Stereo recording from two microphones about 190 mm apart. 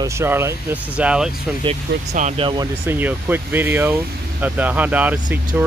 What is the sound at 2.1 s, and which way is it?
Speech, 35° right (ahead or behind).